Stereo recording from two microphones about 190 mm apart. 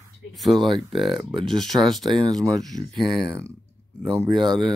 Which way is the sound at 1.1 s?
25° right (ahead or behind).